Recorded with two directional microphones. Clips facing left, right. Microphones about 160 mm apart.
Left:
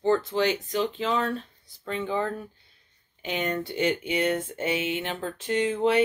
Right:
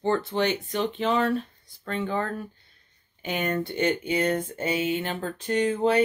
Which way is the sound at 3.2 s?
5° right (ahead or behind).